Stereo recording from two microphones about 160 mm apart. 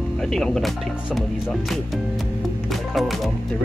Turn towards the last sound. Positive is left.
turn(degrees=0)  # may be behind; listen again after turning